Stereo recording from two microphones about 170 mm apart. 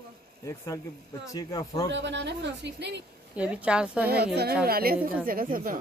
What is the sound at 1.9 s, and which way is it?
A woman's voice, 90° right.